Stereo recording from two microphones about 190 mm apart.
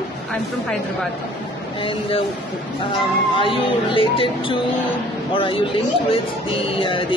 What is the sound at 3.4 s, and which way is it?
Speech, 25° left (ahead or behind).